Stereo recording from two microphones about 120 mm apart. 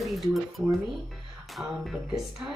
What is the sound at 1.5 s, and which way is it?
Speech, centre (ahead or behind).